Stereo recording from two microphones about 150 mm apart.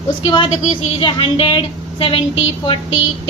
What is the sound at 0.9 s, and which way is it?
A woman's voice, 35° left (ahead or behind).